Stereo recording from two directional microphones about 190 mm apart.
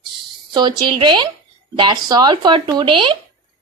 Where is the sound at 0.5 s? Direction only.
25° right (ahead or behind).